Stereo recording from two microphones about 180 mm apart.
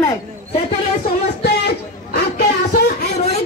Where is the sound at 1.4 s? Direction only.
60° left (ahead or behind).